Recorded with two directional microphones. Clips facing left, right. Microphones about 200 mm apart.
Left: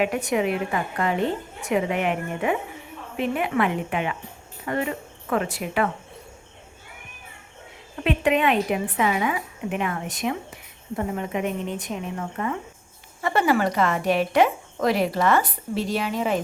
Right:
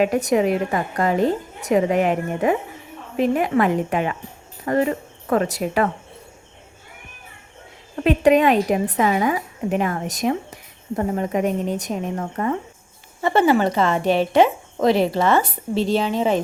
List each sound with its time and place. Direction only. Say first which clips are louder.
0.0 s a woman's voice: right 5 dB; 40° right (ahead or behind)
8.0 s a woman's voice: right 6 dB; 40° right (ahead or behind)
13.2 s a woman's voice: right 4 dB; 25° right (ahead or behind)